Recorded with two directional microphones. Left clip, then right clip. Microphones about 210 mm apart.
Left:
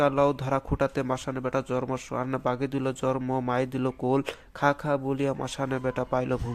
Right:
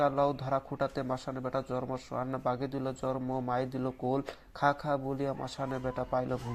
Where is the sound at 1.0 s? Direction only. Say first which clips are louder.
Left 6 dB; 35° left (ahead or behind).